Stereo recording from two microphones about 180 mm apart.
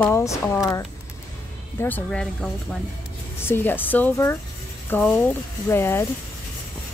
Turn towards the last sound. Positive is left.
turn(degrees=15)  # may be behind; listen again after turning